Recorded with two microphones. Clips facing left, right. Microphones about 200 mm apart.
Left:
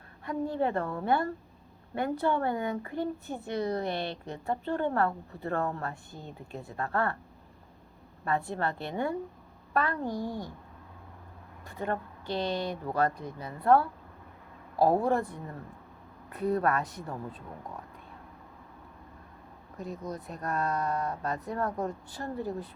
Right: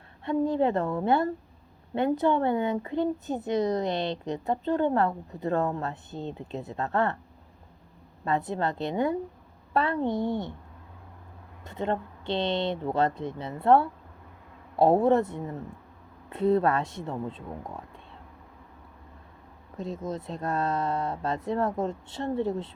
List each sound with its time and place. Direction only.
0.3 s speech: 20° right (ahead or behind)
8.2 s speech: 20° right (ahead or behind)
11.6 s speech: 25° right (ahead or behind)
19.7 s speech: 25° right (ahead or behind)